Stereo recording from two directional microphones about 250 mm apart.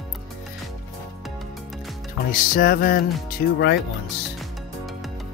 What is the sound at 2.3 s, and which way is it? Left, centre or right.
Music, left.